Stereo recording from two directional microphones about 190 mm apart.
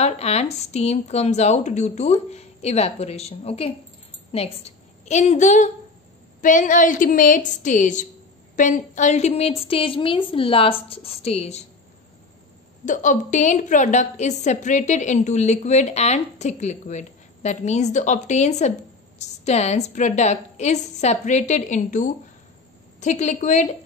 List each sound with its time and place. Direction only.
0.0 s a woman's voice: 35° left (ahead or behind)
12.8 s a woman's voice: 40° left (ahead or behind)